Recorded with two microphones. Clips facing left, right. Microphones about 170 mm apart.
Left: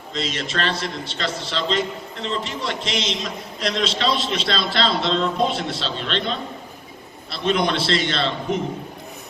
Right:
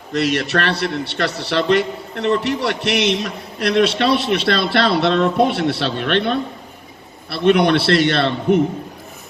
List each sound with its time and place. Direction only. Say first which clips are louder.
0.1 s a man's voice: right 9 dB; 65° right (ahead or behind)